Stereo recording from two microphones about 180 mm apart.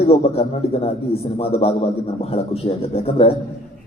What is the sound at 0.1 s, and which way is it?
A man's voice, 35° left (ahead or behind).